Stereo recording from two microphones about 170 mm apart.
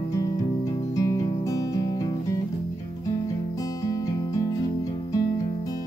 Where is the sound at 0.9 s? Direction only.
20° left (ahead or behind).